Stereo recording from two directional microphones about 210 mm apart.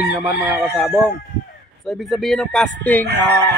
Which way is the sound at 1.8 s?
Centre (ahead or behind).